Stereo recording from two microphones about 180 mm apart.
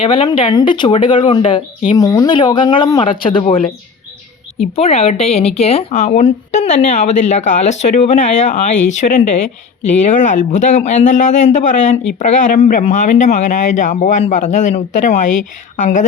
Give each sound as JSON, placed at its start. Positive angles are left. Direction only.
{"t": 0.0, "sound": "speech", "side_deg": 30}
{"t": 4.7, "sound": "speech", "side_deg": 35}